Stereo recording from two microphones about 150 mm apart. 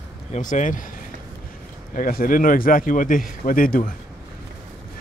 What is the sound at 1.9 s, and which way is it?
Speech, 70° left (ahead or behind).